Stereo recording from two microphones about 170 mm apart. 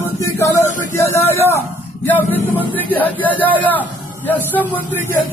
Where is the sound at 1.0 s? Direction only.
15° left (ahead or behind).